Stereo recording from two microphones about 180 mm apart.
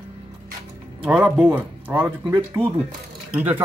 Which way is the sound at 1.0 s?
10° right (ahead or behind).